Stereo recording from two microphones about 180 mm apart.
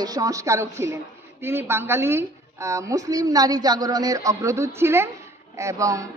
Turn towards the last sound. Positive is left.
turn(degrees=-20)  # may be behind; listen again after turning